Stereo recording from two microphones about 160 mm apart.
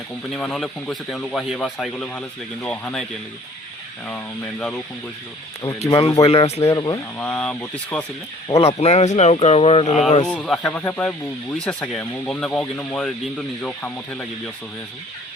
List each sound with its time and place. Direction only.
0.3 s speech: 5° left (ahead or behind)
5.6 s speech: 25° left (ahead or behind)
6.2 s speech: 40° left (ahead or behind)
6.6 s speech: 20° left (ahead or behind)
7.2 s speech: 10° left (ahead or behind)
8.6 s speech: 40° left (ahead or behind)
10.2 s speech: 5° left (ahead or behind)